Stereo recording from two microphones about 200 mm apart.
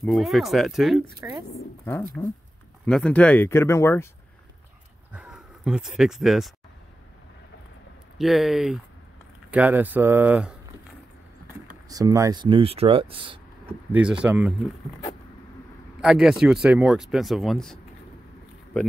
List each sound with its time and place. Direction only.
0.0 s speech: centre (ahead or behind)
2.2 s speech: 15° left (ahead or behind)
5.1 s speech: 5° right (ahead or behind)
8.2 s speech: centre (ahead or behind)
11.9 s speech: 15° right (ahead or behind)
13.9 s speech: 5° right (ahead or behind)
16.0 s speech: 5° right (ahead or behind)